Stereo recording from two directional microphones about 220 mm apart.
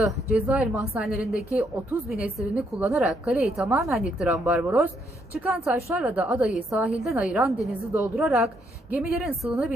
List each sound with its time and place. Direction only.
0.0 s a woman's voice: 5° right (ahead or behind)